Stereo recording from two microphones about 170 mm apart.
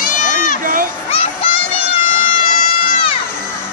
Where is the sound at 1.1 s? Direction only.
35° left (ahead or behind).